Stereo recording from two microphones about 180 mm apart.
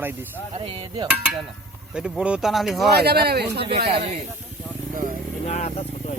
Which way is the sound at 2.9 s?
60° right (ahead or behind).